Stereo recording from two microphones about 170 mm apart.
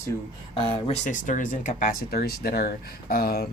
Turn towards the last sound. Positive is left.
turn(degrees=60)  # may be behind; listen again after turning